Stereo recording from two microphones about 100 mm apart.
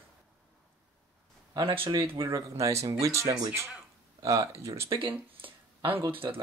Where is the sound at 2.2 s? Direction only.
30° right (ahead or behind).